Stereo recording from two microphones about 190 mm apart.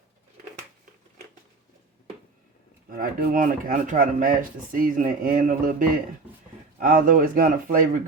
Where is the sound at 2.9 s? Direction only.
50° right (ahead or behind).